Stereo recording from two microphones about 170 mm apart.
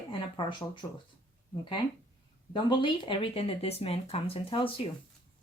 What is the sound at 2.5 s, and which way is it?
Speech, 30° left (ahead or behind).